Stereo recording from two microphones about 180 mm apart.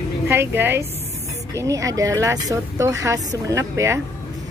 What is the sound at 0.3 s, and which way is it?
Speech, 10° right (ahead or behind).